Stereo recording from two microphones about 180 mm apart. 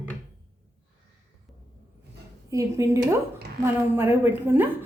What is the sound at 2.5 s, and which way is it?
A woman's voice, 15° right (ahead or behind).